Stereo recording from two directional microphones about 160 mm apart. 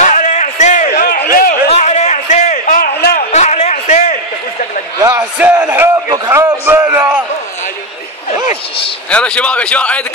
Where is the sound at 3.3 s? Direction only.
45° left (ahead or behind).